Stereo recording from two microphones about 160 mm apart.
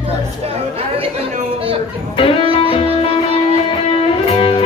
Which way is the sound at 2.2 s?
35° left (ahead or behind).